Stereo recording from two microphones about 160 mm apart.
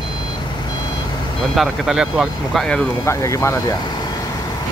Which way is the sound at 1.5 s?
Centre (ahead or behind).